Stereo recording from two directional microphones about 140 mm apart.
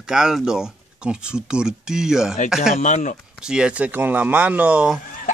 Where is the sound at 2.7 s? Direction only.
60° left (ahead or behind).